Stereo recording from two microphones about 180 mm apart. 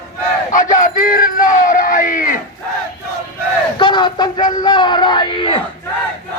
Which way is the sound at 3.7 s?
25° left (ahead or behind).